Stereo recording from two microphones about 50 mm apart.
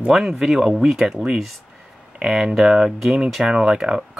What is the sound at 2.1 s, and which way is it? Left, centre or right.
Speech, centre.